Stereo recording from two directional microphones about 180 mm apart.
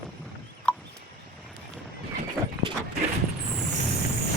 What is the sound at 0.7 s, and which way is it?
Fowl, 5° left (ahead or behind).